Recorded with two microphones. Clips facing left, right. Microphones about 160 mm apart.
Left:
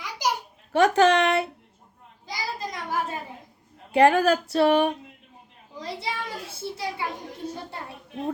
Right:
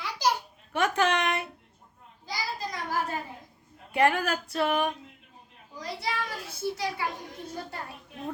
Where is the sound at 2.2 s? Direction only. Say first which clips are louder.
Left 2 dB; 20° left (ahead or behind).